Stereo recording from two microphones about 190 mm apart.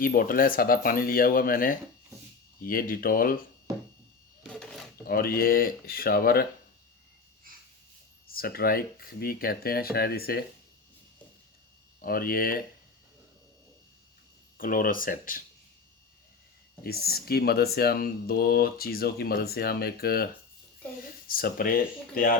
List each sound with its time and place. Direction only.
0.0 s speech: 50° left (ahead or behind)
4.4 s a sound: 5° left (ahead or behind)
5.0 s speech: 50° left (ahead or behind)
8.3 s speech: 50° left (ahead or behind)
12.0 s speech: 50° left (ahead or behind)
14.6 s speech: 50° left (ahead or behind)
16.8 s speech: 55° left (ahead or behind)
21.2 s speech: 50° left (ahead or behind)